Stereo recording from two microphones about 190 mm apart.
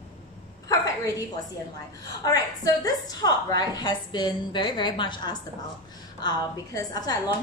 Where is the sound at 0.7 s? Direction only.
20° left (ahead or behind).